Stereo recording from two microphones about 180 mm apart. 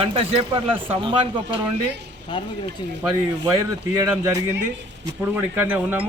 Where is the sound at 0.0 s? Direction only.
30° right (ahead or behind).